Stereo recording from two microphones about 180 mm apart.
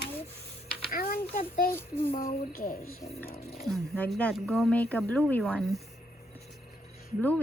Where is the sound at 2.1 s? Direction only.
50° left (ahead or behind).